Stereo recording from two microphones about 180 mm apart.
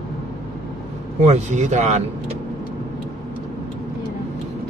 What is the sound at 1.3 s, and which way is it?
Speech, 40° right (ahead or behind).